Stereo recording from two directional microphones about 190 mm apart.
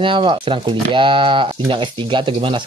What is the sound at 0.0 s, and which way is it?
Speech, 25° right (ahead or behind).